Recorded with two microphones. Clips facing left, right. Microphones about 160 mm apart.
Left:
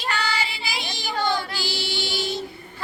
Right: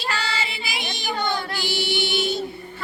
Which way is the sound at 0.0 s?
25° right (ahead or behind).